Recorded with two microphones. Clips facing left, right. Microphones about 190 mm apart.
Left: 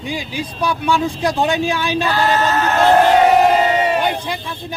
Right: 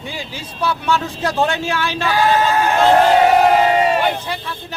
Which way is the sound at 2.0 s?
10° right (ahead or behind).